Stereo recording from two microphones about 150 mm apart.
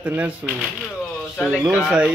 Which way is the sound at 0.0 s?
10° right (ahead or behind).